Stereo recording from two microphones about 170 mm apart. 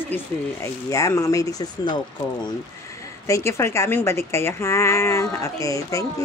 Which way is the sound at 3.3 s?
15° left (ahead or behind).